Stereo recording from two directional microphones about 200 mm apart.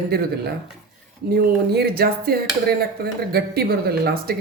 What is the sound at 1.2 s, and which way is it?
Speech, 50° right (ahead or behind).